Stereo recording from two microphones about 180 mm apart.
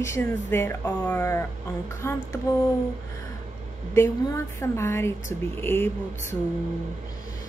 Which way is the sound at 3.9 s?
15° left (ahead or behind).